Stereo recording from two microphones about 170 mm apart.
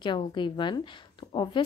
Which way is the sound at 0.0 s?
25° left (ahead or behind).